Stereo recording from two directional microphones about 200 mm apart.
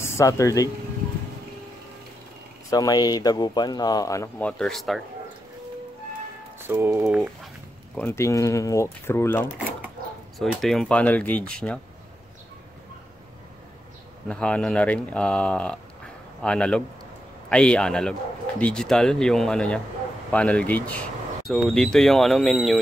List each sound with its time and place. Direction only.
0.0 s speech: 15° left (ahead or behind)
2.7 s speech: 20° left (ahead or behind); by 5.0 s centre (ahead or behind)
6.6 s speech: 10° right (ahead or behind)
7.9 s speech: 10° left (ahead or behind)
10.4 s speech: centre (ahead or behind)
14.2 s speech: 5° left (ahead or behind)